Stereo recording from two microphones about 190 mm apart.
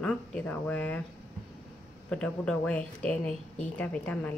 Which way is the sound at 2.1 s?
5° left (ahead or behind).